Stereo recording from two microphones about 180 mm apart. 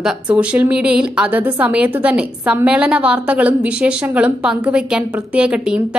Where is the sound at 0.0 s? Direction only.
5° right (ahead or behind).